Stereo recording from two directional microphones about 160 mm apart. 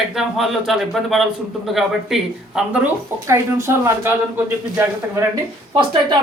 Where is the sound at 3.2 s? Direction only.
15° right (ahead or behind).